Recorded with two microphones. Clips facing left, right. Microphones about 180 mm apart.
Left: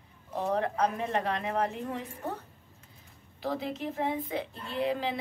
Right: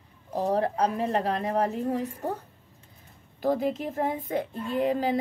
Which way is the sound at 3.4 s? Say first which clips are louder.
Right 7 dB; 50° right (ahead or behind).